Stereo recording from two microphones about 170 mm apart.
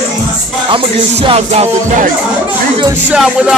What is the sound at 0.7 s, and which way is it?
Music, 35° right (ahead or behind).